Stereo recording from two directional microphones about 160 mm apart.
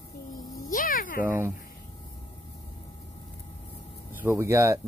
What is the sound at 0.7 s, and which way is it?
Music, 60° left (ahead or behind).